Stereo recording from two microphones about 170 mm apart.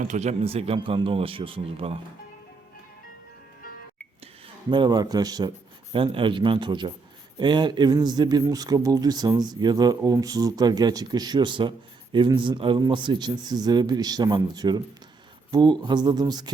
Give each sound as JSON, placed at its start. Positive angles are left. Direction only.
{"t": 0.0, "sound": "speech", "side_deg": -45}
{"t": 4.7, "sound": "speech", "side_deg": -25}